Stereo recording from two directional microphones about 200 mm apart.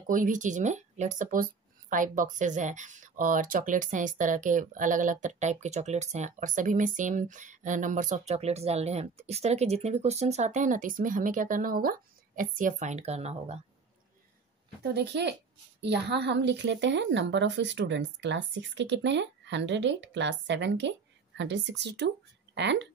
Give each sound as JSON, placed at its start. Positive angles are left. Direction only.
{"t": 0.1, "sound": "speech", "side_deg": -40}
{"t": 14.8, "sound": "speech", "side_deg": -55}